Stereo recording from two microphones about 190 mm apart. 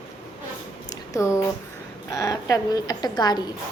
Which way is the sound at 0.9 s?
15° left (ahead or behind).